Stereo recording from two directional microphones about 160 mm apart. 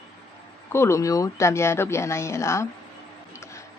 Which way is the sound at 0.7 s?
15° left (ahead or behind).